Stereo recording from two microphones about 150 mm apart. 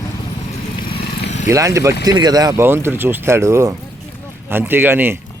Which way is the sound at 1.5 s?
20° right (ahead or behind).